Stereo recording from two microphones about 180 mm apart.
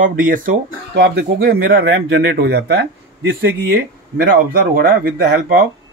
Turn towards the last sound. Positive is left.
turn(degrees=-60)  # may be behind; listen again after turning